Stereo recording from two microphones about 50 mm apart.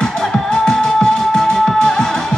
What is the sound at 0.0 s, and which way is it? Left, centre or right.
Music, centre.